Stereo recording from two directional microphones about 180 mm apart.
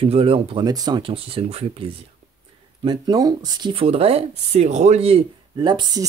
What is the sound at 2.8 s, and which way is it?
Speech, 20° right (ahead or behind).